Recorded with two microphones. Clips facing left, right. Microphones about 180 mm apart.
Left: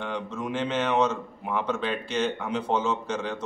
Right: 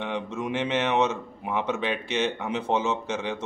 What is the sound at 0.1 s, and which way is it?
Speech, 5° right (ahead or behind).